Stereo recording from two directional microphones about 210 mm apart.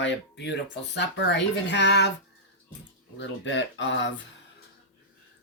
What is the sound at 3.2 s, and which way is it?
Speech, 60° left (ahead or behind).